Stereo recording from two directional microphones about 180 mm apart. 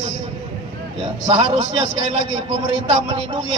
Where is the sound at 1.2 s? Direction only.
30° right (ahead or behind).